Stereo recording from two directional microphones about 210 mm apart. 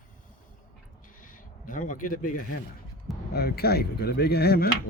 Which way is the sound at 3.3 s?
50° left (ahead or behind).